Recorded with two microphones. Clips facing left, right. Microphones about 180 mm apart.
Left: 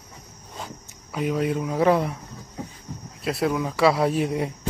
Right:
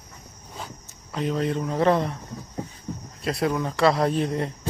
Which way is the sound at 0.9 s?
10° left (ahead or behind).